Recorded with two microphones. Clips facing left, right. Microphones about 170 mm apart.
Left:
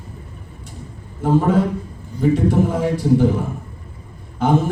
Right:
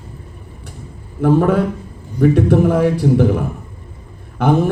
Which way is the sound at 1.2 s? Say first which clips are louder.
Right 3 dB; 65° right (ahead or behind).